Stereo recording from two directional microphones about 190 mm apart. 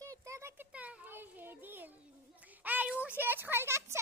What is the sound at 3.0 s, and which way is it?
Speech, 10° right (ahead or behind).